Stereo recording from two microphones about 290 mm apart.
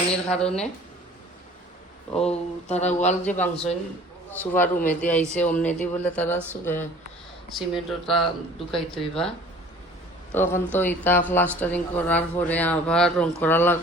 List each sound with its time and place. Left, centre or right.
0.3 s a man's voice: centre
2.3 s speech: left
3.4 s a man's voice: centre
10.3 s a man's voice: centre